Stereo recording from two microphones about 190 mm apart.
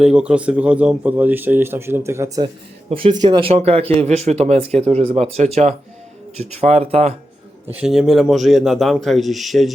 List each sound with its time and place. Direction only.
0.0 s speech: 5° right (ahead or behind); by 7.1 s 30° right (ahead or behind)
7.7 s a man's voice: 5° right (ahead or behind)